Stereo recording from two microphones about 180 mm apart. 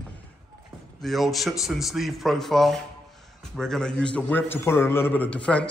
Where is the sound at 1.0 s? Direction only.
Centre (ahead or behind).